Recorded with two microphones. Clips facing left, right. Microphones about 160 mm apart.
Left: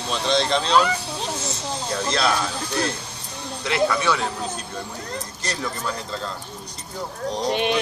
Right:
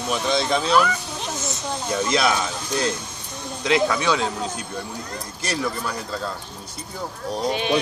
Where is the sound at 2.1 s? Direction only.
15° right (ahead or behind).